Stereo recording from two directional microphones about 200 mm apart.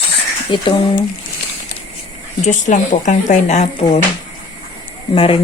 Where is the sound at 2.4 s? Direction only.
40° left (ahead or behind).